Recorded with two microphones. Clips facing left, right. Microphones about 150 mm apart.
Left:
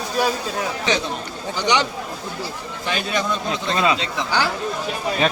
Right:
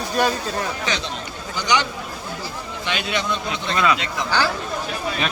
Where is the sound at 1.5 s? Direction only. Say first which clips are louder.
Left 1 dB; 30° left (ahead or behind).